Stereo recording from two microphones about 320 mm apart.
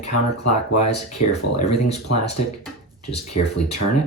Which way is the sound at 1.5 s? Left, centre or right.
Centre.